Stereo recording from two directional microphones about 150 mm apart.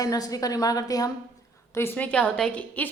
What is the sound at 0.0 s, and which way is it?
A woman's voice, 25° left (ahead or behind).